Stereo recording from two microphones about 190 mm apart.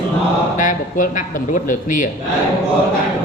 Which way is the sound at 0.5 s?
45° left (ahead or behind).